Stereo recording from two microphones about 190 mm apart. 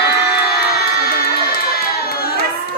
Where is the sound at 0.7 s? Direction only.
55° left (ahead or behind).